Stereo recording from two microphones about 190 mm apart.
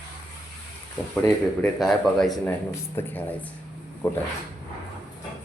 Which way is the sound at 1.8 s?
Centre (ahead or behind).